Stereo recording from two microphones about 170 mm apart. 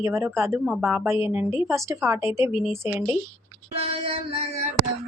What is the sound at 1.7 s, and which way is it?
Speech, 15° right (ahead or behind).